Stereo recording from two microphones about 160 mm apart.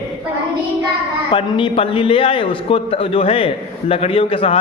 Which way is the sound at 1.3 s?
35° left (ahead or behind).